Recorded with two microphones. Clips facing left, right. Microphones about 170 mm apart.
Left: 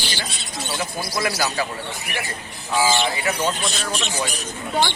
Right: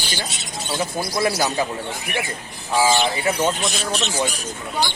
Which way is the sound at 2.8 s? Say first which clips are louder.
Right 2 dB; 25° right (ahead or behind).